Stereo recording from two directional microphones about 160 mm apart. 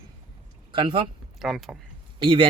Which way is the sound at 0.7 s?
30° right (ahead or behind).